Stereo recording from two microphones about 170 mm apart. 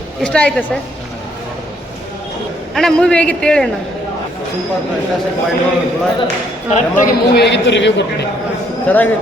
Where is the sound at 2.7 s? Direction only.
5° left (ahead or behind).